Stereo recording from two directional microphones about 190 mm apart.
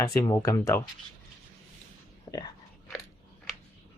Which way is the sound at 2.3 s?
30° left (ahead or behind).